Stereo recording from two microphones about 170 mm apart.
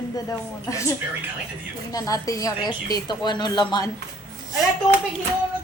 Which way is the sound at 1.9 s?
20° left (ahead or behind).